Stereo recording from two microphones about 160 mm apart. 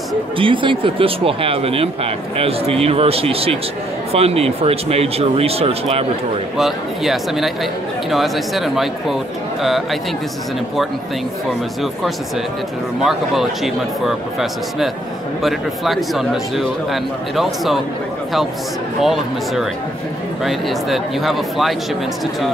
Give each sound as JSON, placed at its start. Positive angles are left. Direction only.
{"t": 0.4, "sound": "speech", "side_deg": -30}
{"t": 6.5, "sound": "speech", "side_deg": 0}
{"t": 13.0, "sound": "speech", "side_deg": 0}
{"t": 18.9, "sound": "speech", "side_deg": 0}